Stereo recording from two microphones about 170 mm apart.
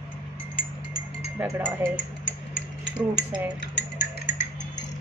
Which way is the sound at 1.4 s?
10° right (ahead or behind).